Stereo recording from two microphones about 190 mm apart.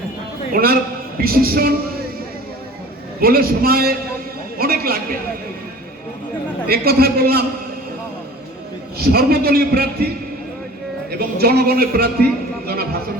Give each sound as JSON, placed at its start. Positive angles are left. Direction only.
{"t": 0.5, "sound": "a man's voice", "side_deg": -50}
{"t": 3.2, "sound": "a man's voice", "side_deg": -50}
{"t": 4.5, "sound": "a sound", "side_deg": -50}
{"t": 6.7, "sound": "a man's voice", "side_deg": -55}
{"t": 9.0, "sound": "a man's voice", "side_deg": -55}
{"t": 11.2, "sound": "a man's voice", "side_deg": -55}